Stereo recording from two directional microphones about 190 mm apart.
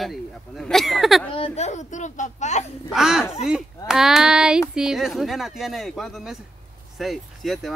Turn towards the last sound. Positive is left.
turn(degrees=0)  # may be behind; listen again after turning